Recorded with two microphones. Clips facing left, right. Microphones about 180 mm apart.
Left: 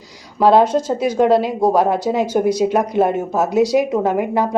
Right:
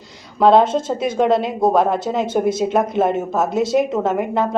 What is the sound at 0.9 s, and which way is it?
Speech, 5° left (ahead or behind).